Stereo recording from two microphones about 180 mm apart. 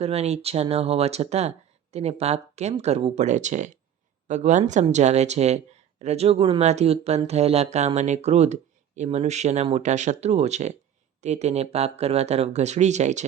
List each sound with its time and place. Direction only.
0.0 s speech: 35° right (ahead or behind)